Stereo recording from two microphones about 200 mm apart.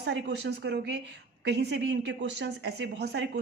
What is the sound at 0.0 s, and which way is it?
Speech, 60° right (ahead or behind).